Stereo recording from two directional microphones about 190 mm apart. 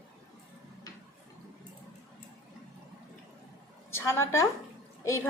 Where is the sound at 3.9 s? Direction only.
15° left (ahead or behind).